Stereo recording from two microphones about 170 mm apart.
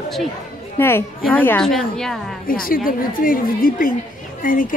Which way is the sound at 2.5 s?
55° left (ahead or behind).